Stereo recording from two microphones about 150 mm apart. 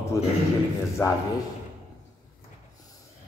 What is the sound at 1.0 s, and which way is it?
Speech, 15° left (ahead or behind).